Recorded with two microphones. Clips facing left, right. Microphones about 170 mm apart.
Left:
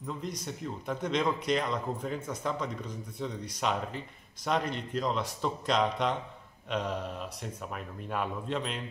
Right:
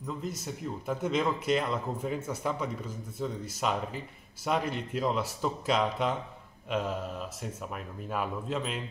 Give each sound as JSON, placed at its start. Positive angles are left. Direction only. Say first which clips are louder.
{"t": 0.0, "sound": "a man's voice", "louder": "right 1 dB", "side_deg": -5}